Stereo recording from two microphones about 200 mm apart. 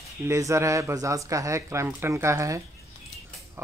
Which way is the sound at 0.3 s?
15° right (ahead or behind).